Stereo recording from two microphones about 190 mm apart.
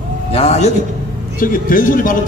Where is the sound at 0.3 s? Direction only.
35° left (ahead or behind).